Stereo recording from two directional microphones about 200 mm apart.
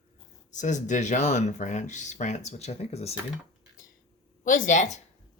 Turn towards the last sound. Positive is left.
turn(degrees=35)  # may be behind; listen again after turning